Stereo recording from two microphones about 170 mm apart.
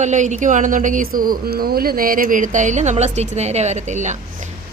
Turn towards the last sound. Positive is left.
turn(degrees=-45)  # may be behind; listen again after turning